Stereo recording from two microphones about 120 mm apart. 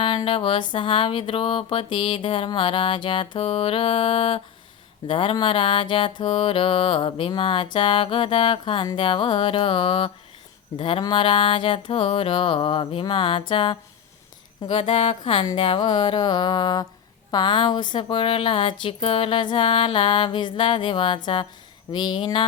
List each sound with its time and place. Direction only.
0.3 s speech: 45° left (ahead or behind)
15.5 s music: 50° left (ahead or behind)
17.3 s speech: 40° left (ahead or behind)
21.9 s music: 40° left (ahead or behind)